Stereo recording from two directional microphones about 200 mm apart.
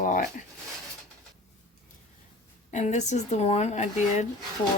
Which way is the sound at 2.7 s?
35° left (ahead or behind).